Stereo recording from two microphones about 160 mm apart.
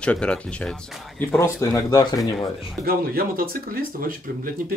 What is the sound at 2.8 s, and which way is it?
Speech, 70° right (ahead or behind).